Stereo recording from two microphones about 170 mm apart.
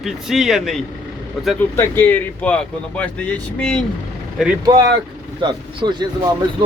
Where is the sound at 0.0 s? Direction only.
Centre (ahead or behind).